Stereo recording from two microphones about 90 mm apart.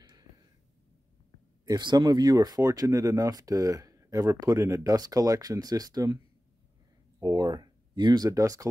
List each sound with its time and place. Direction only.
0.1 s a sound: 45° right (ahead or behind)
1.7 s speech: 55° right (ahead or behind)
7.2 s speech: 45° right (ahead or behind)
8.3 s speech: 40° right (ahead or behind)